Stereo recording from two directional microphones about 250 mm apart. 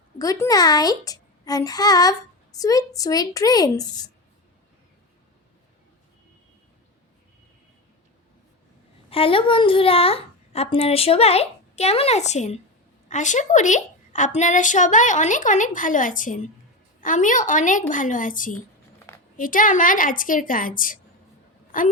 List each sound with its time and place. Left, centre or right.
0.2 s a child's voice: centre
9.0 s a woman's voice: left
18.9 s a sound: centre
19.4 s a woman's voice: left